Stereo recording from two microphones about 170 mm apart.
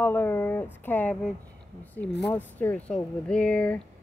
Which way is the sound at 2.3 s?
10° left (ahead or behind).